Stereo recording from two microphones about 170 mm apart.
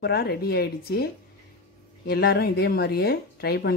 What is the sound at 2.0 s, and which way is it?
Speech, 65° left (ahead or behind).